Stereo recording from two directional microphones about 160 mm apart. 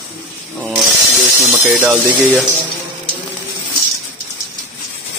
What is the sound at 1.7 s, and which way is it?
Speech, 5° right (ahead or behind).